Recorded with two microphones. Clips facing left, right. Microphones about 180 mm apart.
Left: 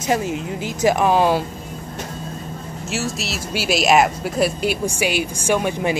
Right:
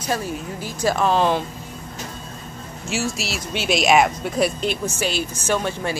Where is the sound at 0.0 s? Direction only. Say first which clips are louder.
Left 4 dB; 20° left (ahead or behind).